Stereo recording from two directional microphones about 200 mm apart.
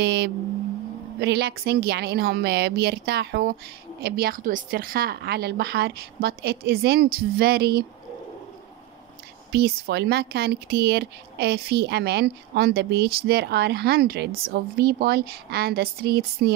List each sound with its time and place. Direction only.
0.0 s vehicle: 55° right (ahead or behind)
1.2 s a woman's voice: 55° right (ahead or behind)
9.5 s speech: 60° right (ahead or behind)